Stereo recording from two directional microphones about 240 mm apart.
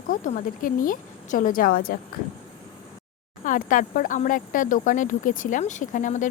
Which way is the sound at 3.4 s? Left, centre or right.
Left.